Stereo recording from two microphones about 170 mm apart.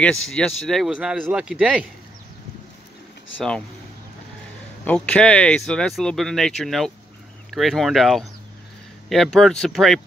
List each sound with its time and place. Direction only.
0.0 s speech: 5° left (ahead or behind)
4.8 s speech: 5° left (ahead or behind)